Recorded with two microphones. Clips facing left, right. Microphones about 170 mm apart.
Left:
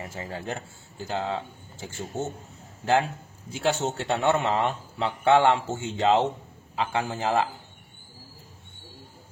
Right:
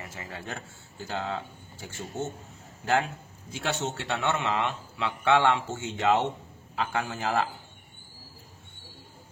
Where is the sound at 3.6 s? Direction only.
35° left (ahead or behind).